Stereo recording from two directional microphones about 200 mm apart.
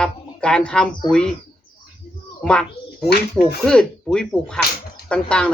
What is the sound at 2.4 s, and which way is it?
A man's voice, 5° left (ahead or behind).